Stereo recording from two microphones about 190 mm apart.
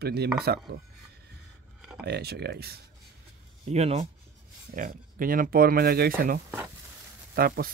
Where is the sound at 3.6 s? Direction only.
35° right (ahead or behind).